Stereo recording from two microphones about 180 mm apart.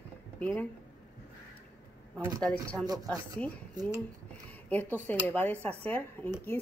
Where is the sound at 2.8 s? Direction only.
20° right (ahead or behind).